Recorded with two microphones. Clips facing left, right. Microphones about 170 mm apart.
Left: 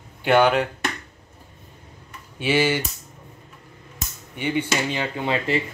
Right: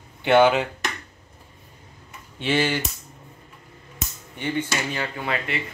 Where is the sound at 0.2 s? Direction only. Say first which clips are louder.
Right 1 dB; centre (ahead or behind).